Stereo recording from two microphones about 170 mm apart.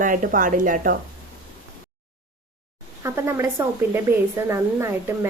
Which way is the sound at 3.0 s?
15° right (ahead or behind).